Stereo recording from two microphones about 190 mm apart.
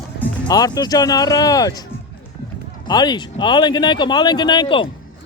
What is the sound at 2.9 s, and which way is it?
Speech, 20° left (ahead or behind).